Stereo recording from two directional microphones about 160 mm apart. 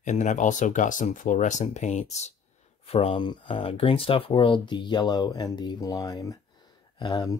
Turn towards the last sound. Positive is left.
turn(degrees=25)  # may be behind; listen again after turning